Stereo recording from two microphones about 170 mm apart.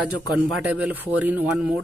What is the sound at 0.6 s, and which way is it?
Speech, 5° right (ahead or behind).